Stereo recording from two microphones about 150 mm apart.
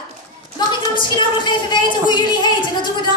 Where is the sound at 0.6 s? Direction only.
30° left (ahead or behind).